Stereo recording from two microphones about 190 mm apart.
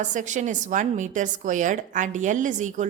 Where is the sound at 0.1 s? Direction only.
40° right (ahead or behind).